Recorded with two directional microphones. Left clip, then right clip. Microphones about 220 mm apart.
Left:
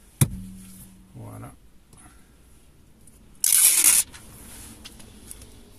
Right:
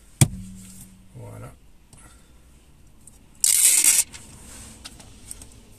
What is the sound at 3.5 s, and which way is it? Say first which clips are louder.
Rub: right 1 dB; 10° right (ahead or behind).